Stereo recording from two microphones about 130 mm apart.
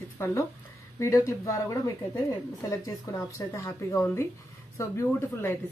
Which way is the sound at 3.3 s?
20° left (ahead or behind).